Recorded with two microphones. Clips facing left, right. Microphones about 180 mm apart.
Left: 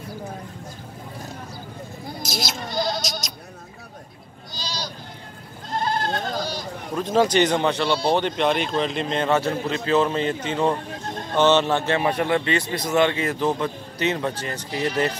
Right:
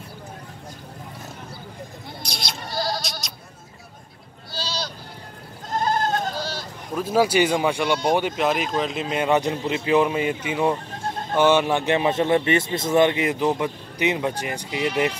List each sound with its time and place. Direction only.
2.2 s goat: centre (ahead or behind)
2.7 s bleat: 20° left (ahead or behind)
3.0 s bleat: centre (ahead or behind)
4.6 s sheep: 15° left (ahead or behind)
5.8 s goat: 45° right (ahead or behind)
6.3 s sheep: 15° left (ahead or behind)
7.0 s a man's voice: 10° right (ahead or behind)